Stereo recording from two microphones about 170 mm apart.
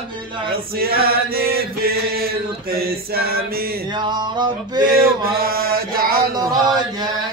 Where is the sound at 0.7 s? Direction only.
65° right (ahead or behind).